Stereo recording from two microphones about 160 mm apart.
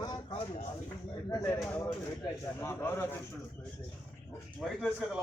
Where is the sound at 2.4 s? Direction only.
15° left (ahead or behind).